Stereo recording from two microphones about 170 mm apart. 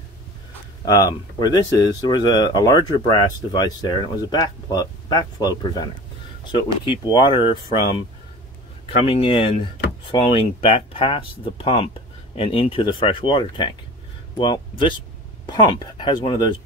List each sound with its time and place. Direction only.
0.8 s speech: 20° left (ahead or behind)
9.0 s speech: 30° left (ahead or behind)
10.6 s speech: 35° left (ahead or behind)